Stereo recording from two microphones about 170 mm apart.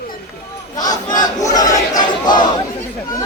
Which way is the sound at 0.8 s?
25° left (ahead or behind).